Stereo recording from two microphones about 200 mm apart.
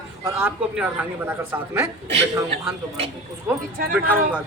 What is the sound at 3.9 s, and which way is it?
Speech, 10° right (ahead or behind).